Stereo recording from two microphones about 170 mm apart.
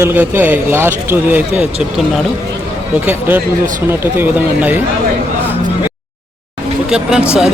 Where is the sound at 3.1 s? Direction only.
10° right (ahead or behind).